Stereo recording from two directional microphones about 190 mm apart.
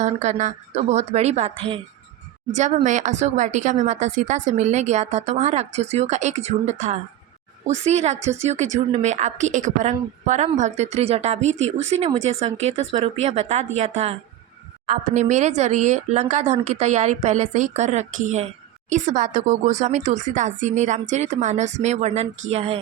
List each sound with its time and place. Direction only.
0.0 s speech: 35° right (ahead or behind)